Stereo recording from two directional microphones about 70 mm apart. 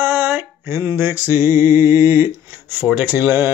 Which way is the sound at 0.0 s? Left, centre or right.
Right.